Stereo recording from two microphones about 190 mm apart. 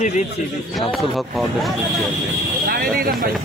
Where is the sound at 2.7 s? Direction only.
50° right (ahead or behind).